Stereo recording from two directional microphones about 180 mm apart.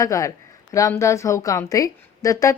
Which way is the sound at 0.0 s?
20° left (ahead or behind).